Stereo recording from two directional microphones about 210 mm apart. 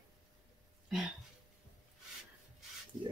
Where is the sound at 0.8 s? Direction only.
Centre (ahead or behind).